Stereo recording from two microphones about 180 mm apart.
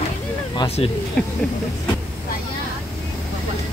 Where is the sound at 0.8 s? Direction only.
35° left (ahead or behind).